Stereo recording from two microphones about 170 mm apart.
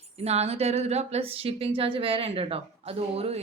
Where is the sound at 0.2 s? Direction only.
40° right (ahead or behind).